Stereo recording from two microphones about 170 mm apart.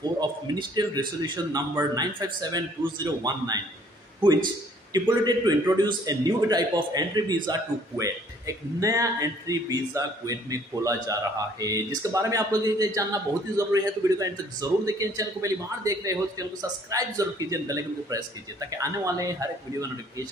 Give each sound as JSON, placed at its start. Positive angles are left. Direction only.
{"t": 0.2, "sound": "speech", "side_deg": -25}
{"t": 4.9, "sound": "speech", "side_deg": -25}